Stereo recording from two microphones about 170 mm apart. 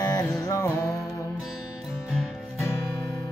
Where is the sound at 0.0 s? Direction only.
20° left (ahead or behind).